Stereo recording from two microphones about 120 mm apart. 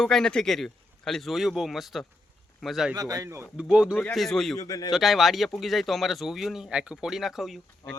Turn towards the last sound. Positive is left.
turn(degrees=0)  # may be behind; listen again after turning